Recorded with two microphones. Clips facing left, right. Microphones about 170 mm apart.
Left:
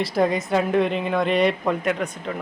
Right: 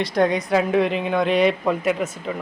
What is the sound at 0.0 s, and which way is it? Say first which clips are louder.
A woman's voice: right 1 dB; 5° left (ahead or behind).